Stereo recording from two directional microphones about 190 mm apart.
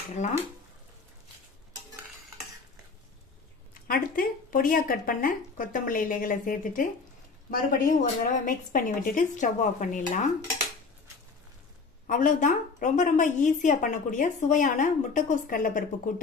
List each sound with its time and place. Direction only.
0.1 s speech: 35° left (ahead or behind)
3.8 s a woman's voice: 50° left (ahead or behind)
12.1 s a woman's voice: 45° left (ahead or behind)